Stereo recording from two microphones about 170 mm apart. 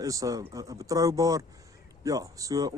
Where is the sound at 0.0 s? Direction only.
20° right (ahead or behind).